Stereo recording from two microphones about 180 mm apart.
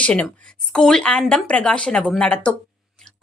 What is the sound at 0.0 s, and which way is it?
A woman's voice, 5° left (ahead or behind).